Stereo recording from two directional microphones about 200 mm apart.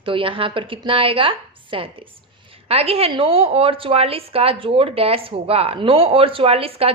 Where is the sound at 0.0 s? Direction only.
25° right (ahead or behind).